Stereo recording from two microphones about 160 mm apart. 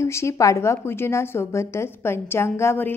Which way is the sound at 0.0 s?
15° left (ahead or behind).